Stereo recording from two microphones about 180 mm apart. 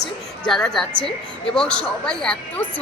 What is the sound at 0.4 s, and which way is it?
A woman's voice, 5° left (ahead or behind).